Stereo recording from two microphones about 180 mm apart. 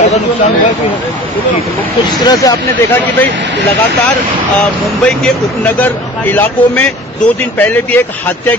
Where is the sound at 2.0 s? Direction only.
20° left (ahead or behind).